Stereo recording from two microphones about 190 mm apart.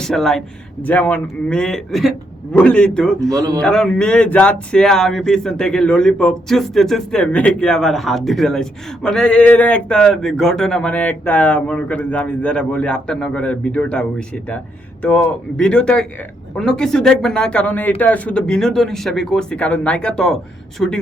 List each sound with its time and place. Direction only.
0.0 s speech: 5° left (ahead or behind)
3.2 s a man's voice: 15° right (ahead or behind)
3.6 s speech: 5° left (ahead or behind)